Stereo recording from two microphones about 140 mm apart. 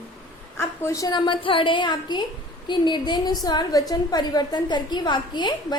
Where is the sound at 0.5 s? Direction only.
20° left (ahead or behind).